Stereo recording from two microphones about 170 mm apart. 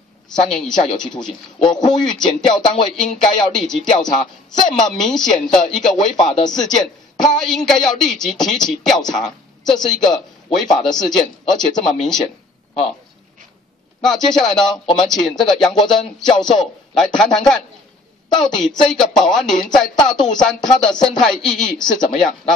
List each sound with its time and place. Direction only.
0.3 s speech: 5° left (ahead or behind)
1.6 s speech: 25° left (ahead or behind)
2.0 s speech: 5° left (ahead or behind)
6.3 s speech: 25° left (ahead or behind)
6.6 s speech: 5° left (ahead or behind)
14.0 s speech: 5° left (ahead or behind)